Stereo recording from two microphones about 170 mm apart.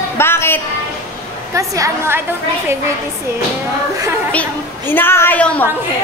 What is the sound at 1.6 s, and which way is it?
Speech, 20° right (ahead or behind).